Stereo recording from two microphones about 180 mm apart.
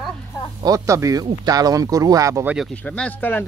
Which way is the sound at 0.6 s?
20° right (ahead or behind).